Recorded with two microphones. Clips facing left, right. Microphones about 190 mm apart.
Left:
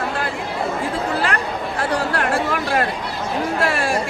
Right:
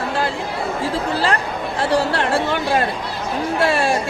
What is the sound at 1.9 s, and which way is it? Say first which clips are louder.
Speech: right 3 dB; 30° right (ahead or behind).